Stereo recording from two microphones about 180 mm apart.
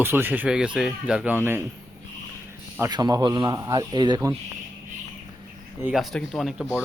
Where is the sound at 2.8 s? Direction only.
20° right (ahead or behind).